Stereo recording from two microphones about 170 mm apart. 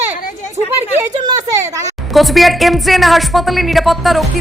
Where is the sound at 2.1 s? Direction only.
Centre (ahead or behind).